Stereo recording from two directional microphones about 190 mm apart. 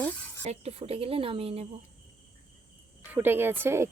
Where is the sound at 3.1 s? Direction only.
10° right (ahead or behind).